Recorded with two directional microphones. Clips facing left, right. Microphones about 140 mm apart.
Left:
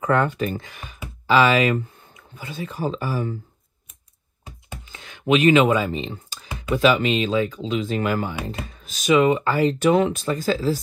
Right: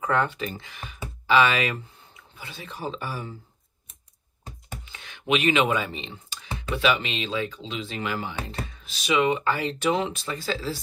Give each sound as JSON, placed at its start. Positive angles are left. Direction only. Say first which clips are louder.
{"t": 0.0, "sound": "speech", "louder": "left 5 dB", "side_deg": 50}
{"t": 4.9, "sound": "speech", "louder": "left 6 dB", "side_deg": 35}